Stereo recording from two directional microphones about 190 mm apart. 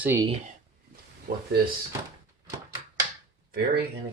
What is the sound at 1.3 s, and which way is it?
Speech, 50° right (ahead or behind).